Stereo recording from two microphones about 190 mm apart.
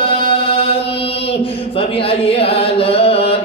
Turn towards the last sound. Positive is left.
turn(degrees=30)  # may be behind; listen again after turning